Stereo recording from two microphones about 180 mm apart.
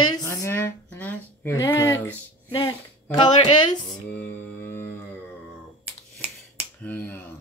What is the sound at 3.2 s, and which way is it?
Speech, 25° left (ahead or behind).